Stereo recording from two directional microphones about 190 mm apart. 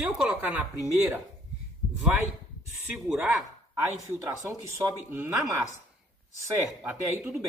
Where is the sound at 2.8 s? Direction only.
5° right (ahead or behind).